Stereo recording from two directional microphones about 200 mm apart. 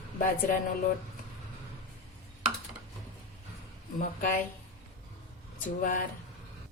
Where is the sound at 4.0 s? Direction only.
45° left (ahead or behind).